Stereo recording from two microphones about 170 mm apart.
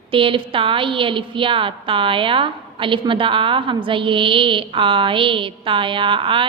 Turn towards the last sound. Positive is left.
turn(degrees=-30)  # may be behind; listen again after turning